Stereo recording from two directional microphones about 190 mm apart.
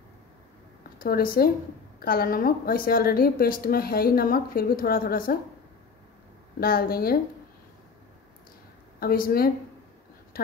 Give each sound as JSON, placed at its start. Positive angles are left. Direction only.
{"t": 0.9, "sound": "a woman's voice", "side_deg": 50}
{"t": 6.6, "sound": "a woman's voice", "side_deg": 50}
{"t": 9.0, "sound": "a woman's voice", "side_deg": 50}
{"t": 10.3, "sound": "a sound", "side_deg": 50}